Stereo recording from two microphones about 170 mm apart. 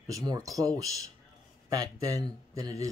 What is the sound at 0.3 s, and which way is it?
Speech, 20° right (ahead or behind).